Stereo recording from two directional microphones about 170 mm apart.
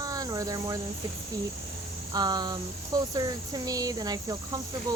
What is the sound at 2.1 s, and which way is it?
Cricket, 25° right (ahead or behind).